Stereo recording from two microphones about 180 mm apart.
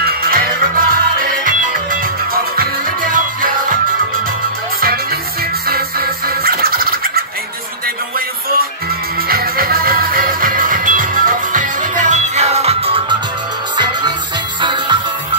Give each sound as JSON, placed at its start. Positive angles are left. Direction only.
{"t": 0.0, "sound": "music", "side_deg": -55}
{"t": 4.7, "sound": "music", "side_deg": -55}
{"t": 9.3, "sound": "music", "side_deg": -55}
{"t": 14.6, "sound": "music", "side_deg": -25}